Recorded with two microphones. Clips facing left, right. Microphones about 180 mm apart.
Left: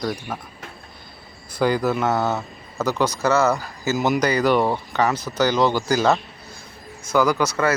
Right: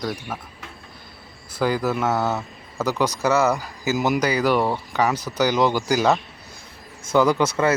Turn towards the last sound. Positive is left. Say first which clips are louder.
# right 1 dB
turn(degrees=-25)  # may be behind; listen again after turning